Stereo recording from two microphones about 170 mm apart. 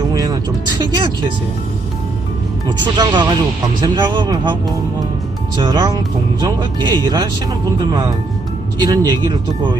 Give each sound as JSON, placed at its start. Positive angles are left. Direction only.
{"t": 0.1, "sound": "music", "side_deg": -20}
{"t": 2.6, "sound": "speech", "side_deg": -25}
{"t": 5.5, "sound": "speech", "side_deg": -25}
{"t": 8.8, "sound": "speech", "side_deg": -25}